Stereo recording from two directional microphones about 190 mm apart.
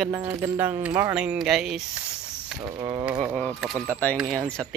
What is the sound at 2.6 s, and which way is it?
Speech, 20° right (ahead or behind).